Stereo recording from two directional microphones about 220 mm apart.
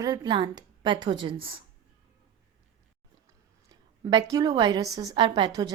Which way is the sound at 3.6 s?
20° right (ahead or behind).